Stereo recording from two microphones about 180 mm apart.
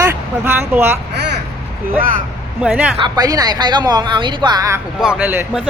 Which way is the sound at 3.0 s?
20° right (ahead or behind).